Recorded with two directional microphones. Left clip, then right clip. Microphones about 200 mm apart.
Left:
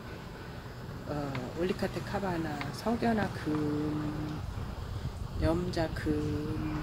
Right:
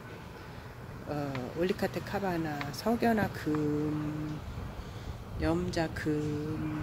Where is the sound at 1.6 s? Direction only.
15° right (ahead or behind).